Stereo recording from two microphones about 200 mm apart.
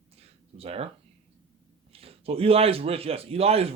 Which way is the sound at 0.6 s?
30° right (ahead or behind).